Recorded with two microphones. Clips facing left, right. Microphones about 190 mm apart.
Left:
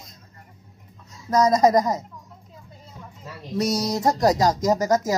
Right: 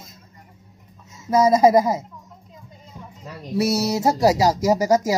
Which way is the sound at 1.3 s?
10° right (ahead or behind).